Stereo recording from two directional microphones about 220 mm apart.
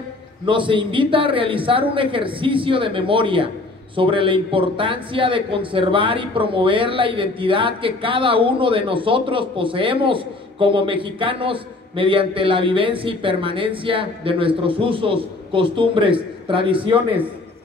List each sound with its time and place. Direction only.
0.5 s speech: 20° right (ahead or behind)